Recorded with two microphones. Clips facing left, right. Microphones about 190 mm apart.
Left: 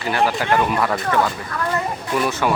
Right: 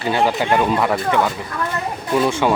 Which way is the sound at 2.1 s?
25° right (ahead or behind).